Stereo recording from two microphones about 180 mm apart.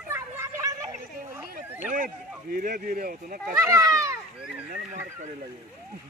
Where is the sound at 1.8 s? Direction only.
45° right (ahead or behind).